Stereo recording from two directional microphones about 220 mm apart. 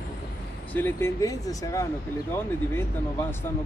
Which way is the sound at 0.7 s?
10° left (ahead or behind).